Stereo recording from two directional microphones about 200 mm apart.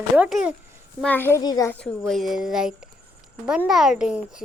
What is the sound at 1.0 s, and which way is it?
Speech, 10° left (ahead or behind).